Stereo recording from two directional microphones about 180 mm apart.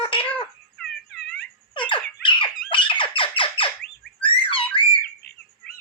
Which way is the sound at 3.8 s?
5° left (ahead or behind).